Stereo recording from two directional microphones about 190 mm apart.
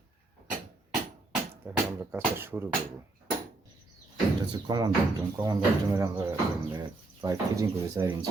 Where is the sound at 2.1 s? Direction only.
10° right (ahead or behind).